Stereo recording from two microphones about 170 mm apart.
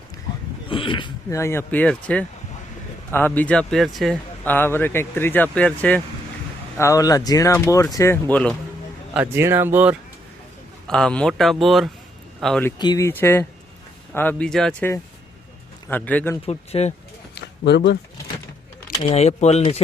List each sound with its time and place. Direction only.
0.7 s speech: 30° left (ahead or behind)
1.4 s speech: 15° left (ahead or behind)
6.7 s speech: 20° left (ahead or behind)
9.1 s speech: 10° right (ahead or behind)
10.8 s speech: 5° left (ahead or behind)
12.8 s speech: 20° left (ahead or behind)
16.5 s speech: 40° left (ahead or behind)
17.3 s a sound: 90° left
18.9 s speech: 35° left (ahead or behind)